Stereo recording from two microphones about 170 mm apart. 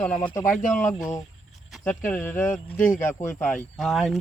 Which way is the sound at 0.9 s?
20° left (ahead or behind).